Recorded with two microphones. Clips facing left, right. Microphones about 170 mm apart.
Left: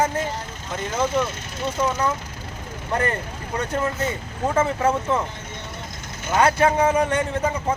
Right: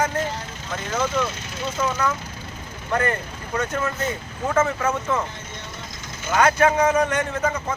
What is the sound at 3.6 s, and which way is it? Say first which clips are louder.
Speech: left 1 dB; 30° left (ahead or behind).